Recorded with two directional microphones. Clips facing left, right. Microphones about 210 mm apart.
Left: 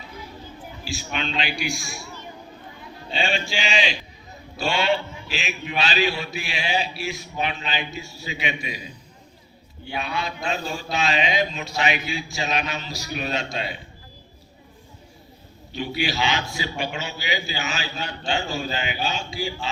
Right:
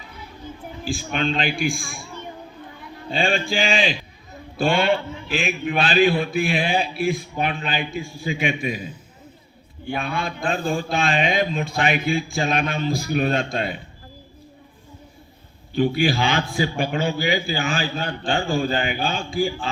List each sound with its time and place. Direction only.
0.9 s a man's voice: 50° right (ahead or behind)
3.1 s a man's voice: 50° right (ahead or behind)
15.7 s a man's voice: 50° right (ahead or behind)